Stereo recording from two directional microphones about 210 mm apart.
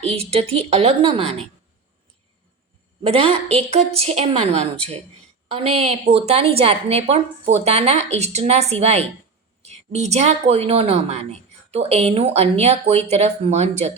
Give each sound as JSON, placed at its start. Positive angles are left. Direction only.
{"t": 0.0, "sound": "a woman's voice", "side_deg": -30}
{"t": 3.0, "sound": "a woman's voice", "side_deg": -25}